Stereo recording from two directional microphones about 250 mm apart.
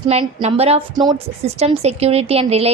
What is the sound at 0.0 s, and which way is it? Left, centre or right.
A woman's voice, right.